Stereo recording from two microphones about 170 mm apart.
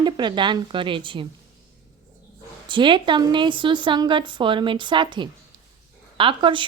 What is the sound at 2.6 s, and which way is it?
A woman's voice, 30° right (ahead or behind).